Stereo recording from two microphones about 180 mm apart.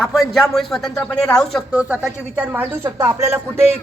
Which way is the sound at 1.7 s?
10° right (ahead or behind).